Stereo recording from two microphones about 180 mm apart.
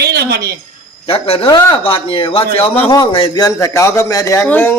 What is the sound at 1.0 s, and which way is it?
A man's voice, 30° left (ahead or behind).